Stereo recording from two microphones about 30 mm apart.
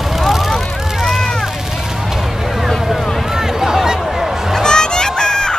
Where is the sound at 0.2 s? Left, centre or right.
Centre.